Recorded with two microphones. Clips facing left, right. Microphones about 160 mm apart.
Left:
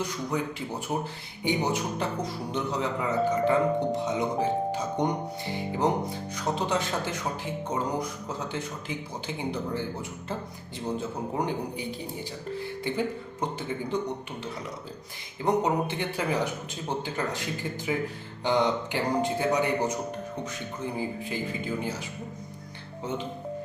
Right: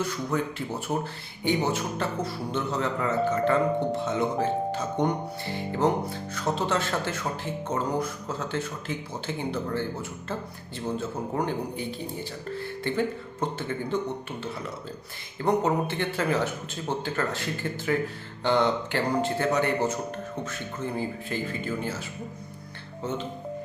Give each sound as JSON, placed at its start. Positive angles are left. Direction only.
{"t": 0.0, "sound": "speech", "side_deg": 15}
{"t": 15.4, "sound": "speech", "side_deg": 15}